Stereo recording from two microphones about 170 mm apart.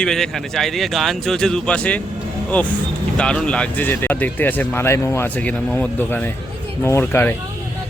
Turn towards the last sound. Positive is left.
turn(degrees=10)  # may be behind; listen again after turning